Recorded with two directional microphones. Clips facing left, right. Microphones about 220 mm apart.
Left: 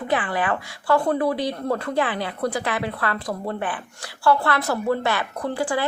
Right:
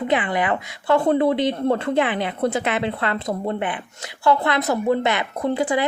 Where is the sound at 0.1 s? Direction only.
20° right (ahead or behind).